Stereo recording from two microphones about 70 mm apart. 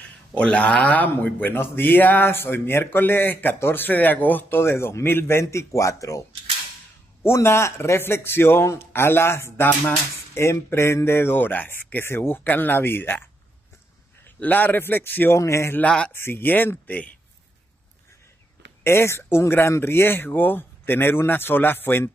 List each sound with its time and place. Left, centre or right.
0.3 s speech: centre; by 6.2 s left
7.2 s speech: left
14.4 s speech: left
15.3 s a man's voice: left
18.9 s speech: left